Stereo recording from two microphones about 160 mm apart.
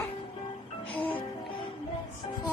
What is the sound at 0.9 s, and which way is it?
Music, 5° left (ahead or behind).